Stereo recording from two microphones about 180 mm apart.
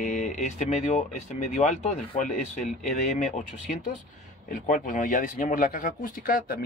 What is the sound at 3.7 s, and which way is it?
Speech, 50° left (ahead or behind).